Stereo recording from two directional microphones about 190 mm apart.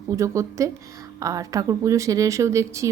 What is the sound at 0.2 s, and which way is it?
A woman's voice, 15° right (ahead or behind).